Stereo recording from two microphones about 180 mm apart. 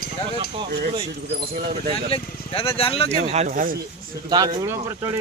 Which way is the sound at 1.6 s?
55° right (ahead or behind).